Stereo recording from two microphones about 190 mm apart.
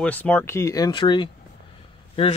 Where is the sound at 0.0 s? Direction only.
10° left (ahead or behind).